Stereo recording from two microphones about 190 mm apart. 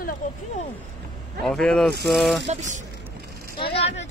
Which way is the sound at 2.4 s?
40° right (ahead or behind).